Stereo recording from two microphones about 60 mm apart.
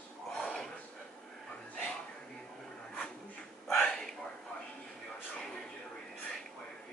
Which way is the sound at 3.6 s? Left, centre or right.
Centre.